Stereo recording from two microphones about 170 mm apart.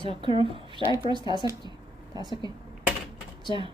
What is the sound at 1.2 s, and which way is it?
Speech, 25° left (ahead or behind).